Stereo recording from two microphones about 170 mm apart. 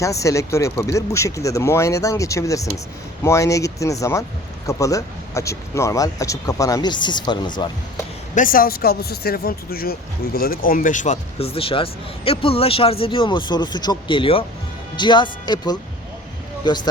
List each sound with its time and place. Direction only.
0.0 s speech: 20° left (ahead or behind)
8.4 s speech: 55° left (ahead or behind); by 16.8 s 25° left (ahead or behind)